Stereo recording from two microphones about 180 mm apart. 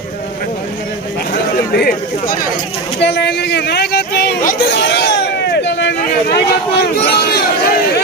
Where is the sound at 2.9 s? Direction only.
70° left (ahead or behind).